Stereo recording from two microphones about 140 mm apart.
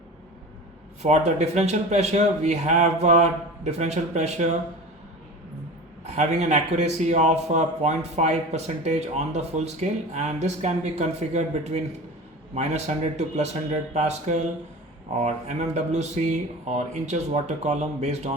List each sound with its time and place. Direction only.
1.0 s a man's voice: 55° right (ahead or behind)
6.1 s a man's voice: 55° right (ahead or behind)